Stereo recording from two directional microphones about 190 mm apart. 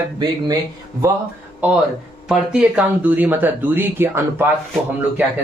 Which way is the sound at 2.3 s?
5° right (ahead or behind).